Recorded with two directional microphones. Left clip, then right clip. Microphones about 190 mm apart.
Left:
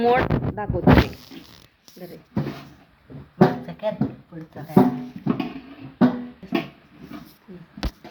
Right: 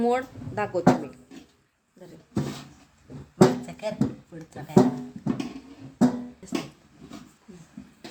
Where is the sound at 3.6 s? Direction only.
15° right (ahead or behind).